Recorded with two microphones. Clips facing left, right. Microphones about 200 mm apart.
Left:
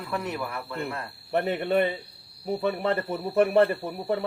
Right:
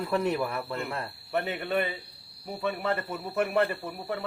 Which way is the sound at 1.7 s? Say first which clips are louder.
Left 5 dB; 40° left (ahead or behind).